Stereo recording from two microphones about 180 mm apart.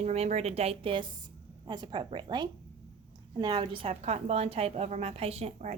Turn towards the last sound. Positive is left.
turn(degrees=-40)  # may be behind; listen again after turning